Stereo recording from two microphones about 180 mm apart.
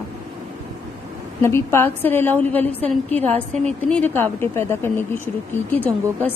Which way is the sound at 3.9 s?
10° left (ahead or behind).